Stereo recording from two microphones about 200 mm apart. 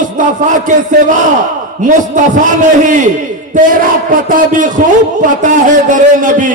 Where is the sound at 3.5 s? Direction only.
40° right (ahead or behind).